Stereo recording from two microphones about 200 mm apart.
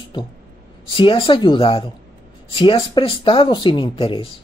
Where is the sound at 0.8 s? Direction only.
25° left (ahead or behind).